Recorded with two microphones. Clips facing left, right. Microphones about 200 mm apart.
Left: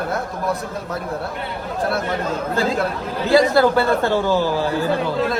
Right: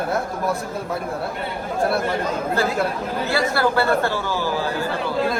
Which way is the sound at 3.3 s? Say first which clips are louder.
Left 7 dB; 20° left (ahead or behind).